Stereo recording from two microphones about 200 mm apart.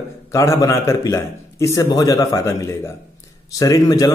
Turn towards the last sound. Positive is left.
turn(degrees=15)  # may be behind; listen again after turning